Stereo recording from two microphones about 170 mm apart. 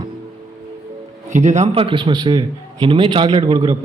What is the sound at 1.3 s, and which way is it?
A man's voice, 45° right (ahead or behind).